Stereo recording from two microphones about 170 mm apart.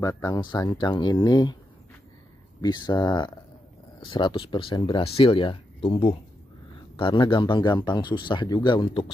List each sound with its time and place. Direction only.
0.0 s speech: 20° left (ahead or behind)
2.6 s speech: 25° left (ahead or behind)